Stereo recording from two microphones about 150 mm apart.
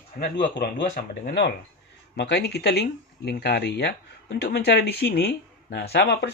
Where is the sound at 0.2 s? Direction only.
85° left.